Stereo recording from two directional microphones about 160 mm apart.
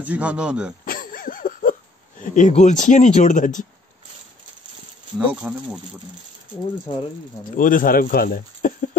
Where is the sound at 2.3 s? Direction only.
50° left (ahead or behind).